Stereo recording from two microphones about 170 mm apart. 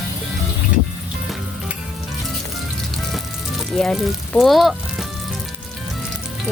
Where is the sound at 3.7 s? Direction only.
Centre (ahead or behind).